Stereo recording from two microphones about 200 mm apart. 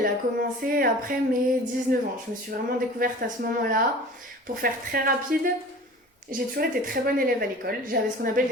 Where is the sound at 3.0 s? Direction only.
45° right (ahead or behind).